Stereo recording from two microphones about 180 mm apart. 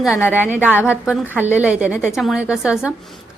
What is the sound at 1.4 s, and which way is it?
A woman's voice, 10° right (ahead or behind).